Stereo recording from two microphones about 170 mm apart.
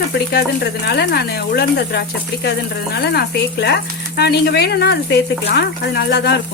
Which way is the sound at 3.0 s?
75° left (ahead or behind).